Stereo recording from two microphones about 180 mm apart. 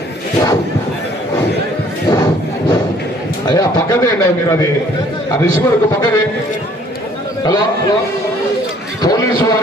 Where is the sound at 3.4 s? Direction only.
20° left (ahead or behind).